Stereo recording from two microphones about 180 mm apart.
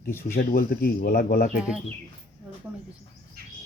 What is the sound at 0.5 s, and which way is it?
Speech, 55° left (ahead or behind).